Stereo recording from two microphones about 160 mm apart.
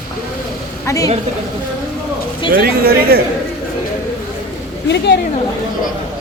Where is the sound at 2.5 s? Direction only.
70° right (ahead or behind).